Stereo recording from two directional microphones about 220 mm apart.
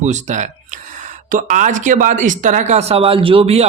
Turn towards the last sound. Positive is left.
turn(degrees=-25)  # may be behind; listen again after turning